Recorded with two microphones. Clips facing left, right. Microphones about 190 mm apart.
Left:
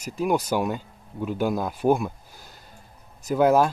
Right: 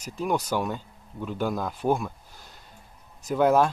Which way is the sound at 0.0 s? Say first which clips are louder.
Left 3 dB; 10° left (ahead or behind).